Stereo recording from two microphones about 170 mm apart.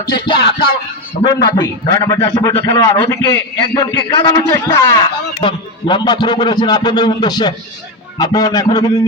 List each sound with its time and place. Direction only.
0.0 s a man's voice: 25° left (ahead or behind)
0.3 s music: 65° left (ahead or behind)
1.5 s a man's voice: 20° left (ahead or behind)